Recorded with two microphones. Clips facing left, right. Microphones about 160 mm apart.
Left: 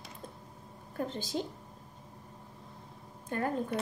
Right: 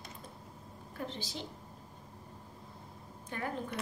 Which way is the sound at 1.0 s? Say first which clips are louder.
Left 5 dB; 45° left (ahead or behind).